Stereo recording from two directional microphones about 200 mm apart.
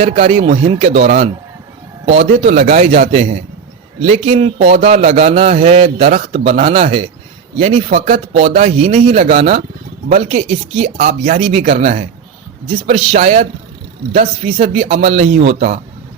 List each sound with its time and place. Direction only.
0.0 s a man's voice: 35° right (ahead or behind)